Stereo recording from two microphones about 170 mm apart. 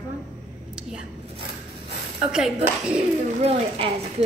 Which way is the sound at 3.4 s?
35° right (ahead or behind).